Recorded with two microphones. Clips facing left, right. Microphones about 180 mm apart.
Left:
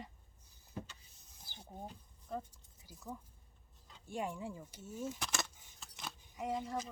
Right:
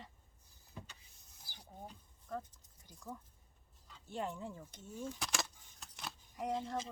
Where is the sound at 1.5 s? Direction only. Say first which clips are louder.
Left 3 dB; 25° left (ahead or behind).